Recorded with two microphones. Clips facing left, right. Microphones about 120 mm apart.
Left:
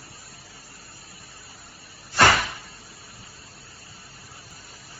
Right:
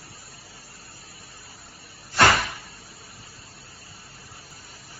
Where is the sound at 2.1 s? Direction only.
Centre (ahead or behind).